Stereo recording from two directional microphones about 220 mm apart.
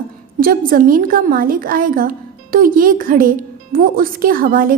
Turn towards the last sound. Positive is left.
turn(degrees=-40)  # may be behind; listen again after turning